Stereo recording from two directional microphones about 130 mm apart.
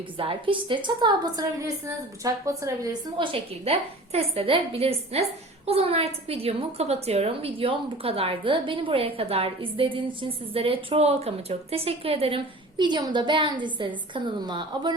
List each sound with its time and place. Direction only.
0.2 s a woman's voice: 45° right (ahead or behind); by 2.9 s 25° right (ahead or behind)
3.2 s a woman's voice: 50° right (ahead or behind)